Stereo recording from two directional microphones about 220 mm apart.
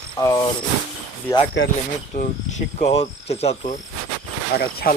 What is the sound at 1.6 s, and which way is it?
Speech, 55° left (ahead or behind).